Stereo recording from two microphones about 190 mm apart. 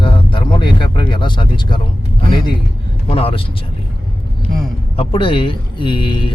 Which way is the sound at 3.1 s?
30° left (ahead or behind).